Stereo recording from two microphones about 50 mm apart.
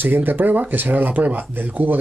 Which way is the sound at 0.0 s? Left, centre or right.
Right.